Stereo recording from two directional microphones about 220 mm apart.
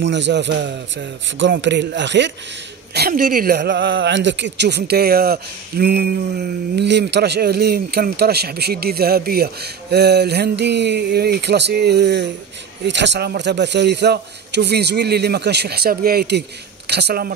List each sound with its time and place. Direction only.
0.0 s a man's voice: 55° right (ahead or behind)